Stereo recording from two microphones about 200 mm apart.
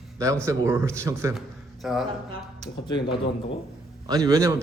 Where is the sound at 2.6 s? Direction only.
20° left (ahead or behind).